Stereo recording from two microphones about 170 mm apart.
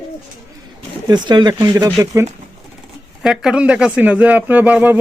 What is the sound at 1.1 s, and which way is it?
Speech, 25° right (ahead or behind).